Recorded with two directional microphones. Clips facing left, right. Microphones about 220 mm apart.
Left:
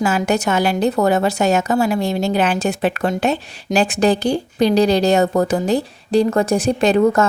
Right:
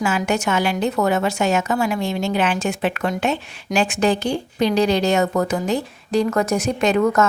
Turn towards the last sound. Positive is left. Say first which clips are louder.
# left 3 dB
turn(degrees=30)  # may be behind; listen again after turning